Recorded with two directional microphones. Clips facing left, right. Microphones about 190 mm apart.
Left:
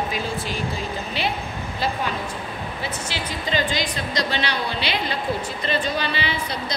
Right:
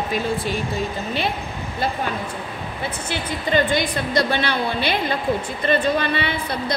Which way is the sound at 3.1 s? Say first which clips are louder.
Right 6 dB; 55° right (ahead or behind).